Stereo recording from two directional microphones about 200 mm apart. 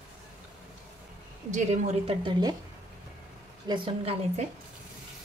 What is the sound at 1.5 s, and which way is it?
A woman's voice, 35° right (ahead or behind).